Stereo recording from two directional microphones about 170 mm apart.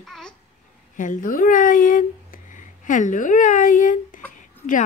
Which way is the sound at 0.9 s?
50° left (ahead or behind).